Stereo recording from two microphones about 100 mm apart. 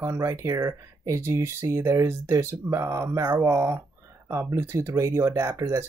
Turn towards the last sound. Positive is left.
turn(degrees=-30)  # may be behind; listen again after turning